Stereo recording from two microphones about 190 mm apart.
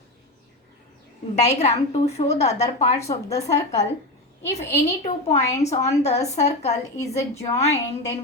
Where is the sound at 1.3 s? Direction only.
35° left (ahead or behind).